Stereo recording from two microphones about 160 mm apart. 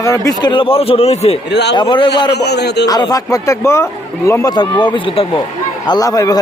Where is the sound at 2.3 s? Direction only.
90° left.